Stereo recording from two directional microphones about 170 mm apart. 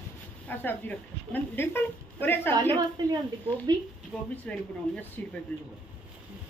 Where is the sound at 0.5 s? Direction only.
10° left (ahead or behind).